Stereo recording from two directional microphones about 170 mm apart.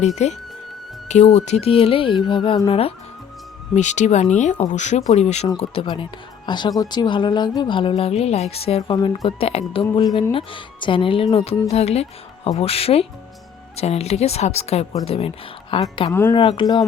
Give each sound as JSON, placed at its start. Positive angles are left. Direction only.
{"t": 0.2, "sound": "speech", "side_deg": 40}
{"t": 3.8, "sound": "speech", "side_deg": 45}
{"t": 9.0, "sound": "speech", "side_deg": 25}